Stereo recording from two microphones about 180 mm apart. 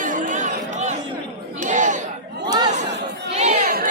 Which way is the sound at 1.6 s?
45° right (ahead or behind).